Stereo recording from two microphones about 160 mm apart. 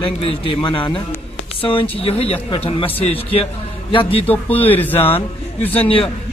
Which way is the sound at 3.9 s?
35° left (ahead or behind).